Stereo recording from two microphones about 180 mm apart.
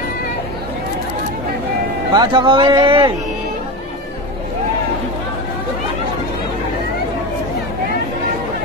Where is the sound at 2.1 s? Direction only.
25° right (ahead or behind).